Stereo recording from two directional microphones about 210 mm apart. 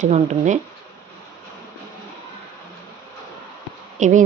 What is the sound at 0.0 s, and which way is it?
Speech, 35° right (ahead or behind).